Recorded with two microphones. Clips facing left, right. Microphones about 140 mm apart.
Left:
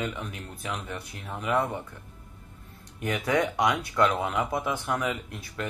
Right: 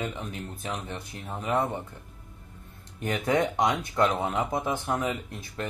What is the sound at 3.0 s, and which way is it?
Speech, 25° right (ahead or behind).